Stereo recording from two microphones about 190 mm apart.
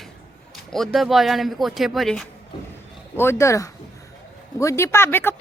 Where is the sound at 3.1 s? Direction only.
15° left (ahead or behind).